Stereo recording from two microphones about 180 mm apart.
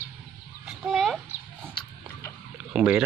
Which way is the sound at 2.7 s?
5° right (ahead or behind).